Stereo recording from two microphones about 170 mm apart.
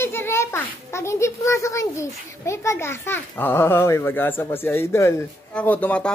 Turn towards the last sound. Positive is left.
turn(degrees=10)  # may be behind; listen again after turning